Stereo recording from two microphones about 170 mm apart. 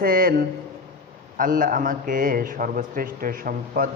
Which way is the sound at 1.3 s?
55° right (ahead or behind).